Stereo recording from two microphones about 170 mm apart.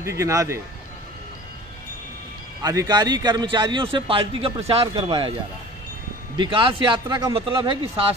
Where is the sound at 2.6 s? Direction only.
20° right (ahead or behind).